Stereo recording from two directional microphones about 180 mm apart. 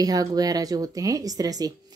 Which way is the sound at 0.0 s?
20° right (ahead or behind).